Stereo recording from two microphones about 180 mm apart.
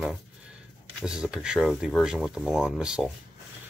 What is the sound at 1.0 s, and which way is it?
Speech, 5° right (ahead or behind).